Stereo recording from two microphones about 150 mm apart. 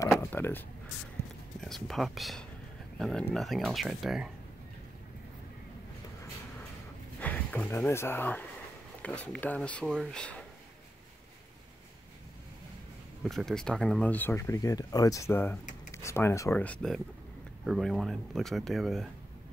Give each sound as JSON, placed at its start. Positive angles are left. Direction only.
{"t": 0.2, "sound": "a sound", "side_deg": 15}
{"t": 1.6, "sound": "speech", "side_deg": 0}
{"t": 7.2, "sound": "speech", "side_deg": 10}
{"t": 13.2, "sound": "speech", "side_deg": 0}